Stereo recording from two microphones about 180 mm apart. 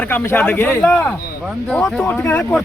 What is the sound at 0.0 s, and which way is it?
A man's voice, 10° left (ahead or behind).